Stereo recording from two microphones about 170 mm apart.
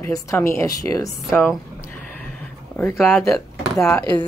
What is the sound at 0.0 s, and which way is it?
Speech, 15° left (ahead or behind).